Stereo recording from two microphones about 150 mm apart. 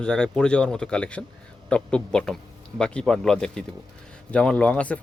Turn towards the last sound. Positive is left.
turn(degrees=10)  # may be behind; listen again after turning